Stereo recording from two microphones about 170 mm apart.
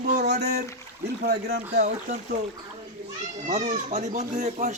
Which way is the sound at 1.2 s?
75° right (ahead or behind).